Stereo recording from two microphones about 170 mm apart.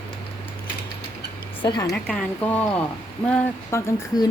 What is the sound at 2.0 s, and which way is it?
Speech, 10° left (ahead or behind).